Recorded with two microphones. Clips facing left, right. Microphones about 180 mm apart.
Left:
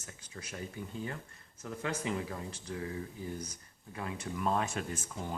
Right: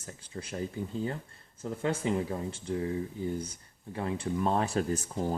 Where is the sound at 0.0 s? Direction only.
30° right (ahead or behind).